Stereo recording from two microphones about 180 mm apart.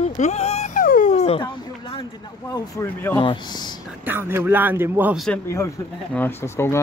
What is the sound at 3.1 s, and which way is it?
Speech, 25° left (ahead or behind).